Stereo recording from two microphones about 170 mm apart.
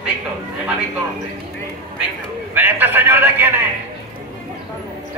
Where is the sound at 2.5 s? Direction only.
10° right (ahead or behind).